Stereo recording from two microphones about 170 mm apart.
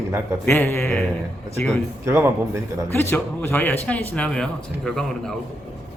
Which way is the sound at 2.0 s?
15° right (ahead or behind).